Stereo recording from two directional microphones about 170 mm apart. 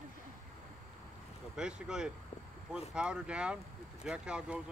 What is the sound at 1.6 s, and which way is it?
Speech, 5° right (ahead or behind).